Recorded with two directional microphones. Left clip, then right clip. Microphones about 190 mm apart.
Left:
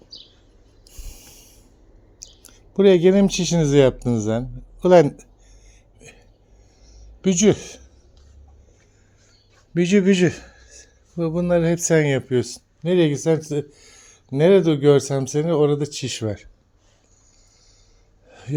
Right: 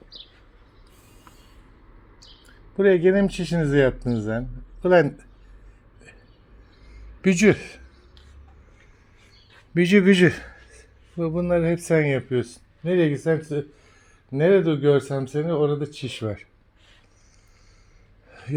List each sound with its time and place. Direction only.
0.9 s a sound: 35° left (ahead or behind)
2.4 s speech: 30° left (ahead or behind)
7.2 s a man's voice: 5° right (ahead or behind)
7.5 s speech: 15° left (ahead or behind)
9.7 s a man's voice: centre (ahead or behind)
10.7 s speech: 10° left (ahead or behind)
18.3 s gasp: 10° left (ahead or behind)